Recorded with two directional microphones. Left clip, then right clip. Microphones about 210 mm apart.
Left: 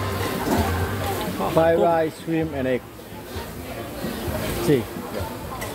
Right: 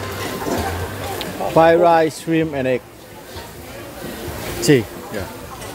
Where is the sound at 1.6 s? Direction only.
30° right (ahead or behind).